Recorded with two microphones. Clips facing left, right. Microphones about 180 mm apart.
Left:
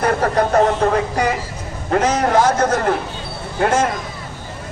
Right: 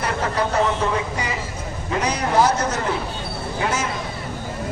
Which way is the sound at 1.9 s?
50° left (ahead or behind).